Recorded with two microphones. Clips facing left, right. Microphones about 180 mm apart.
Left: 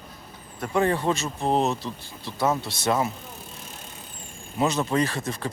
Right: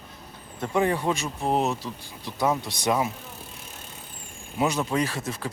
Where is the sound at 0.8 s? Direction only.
10° right (ahead or behind).